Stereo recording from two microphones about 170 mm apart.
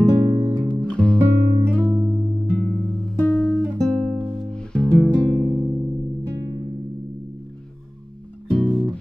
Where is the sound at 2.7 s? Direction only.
5° left (ahead or behind).